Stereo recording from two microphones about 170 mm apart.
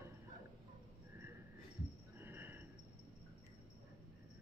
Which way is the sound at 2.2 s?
10° right (ahead or behind).